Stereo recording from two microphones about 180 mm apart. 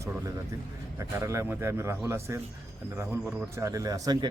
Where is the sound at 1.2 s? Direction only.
15° right (ahead or behind).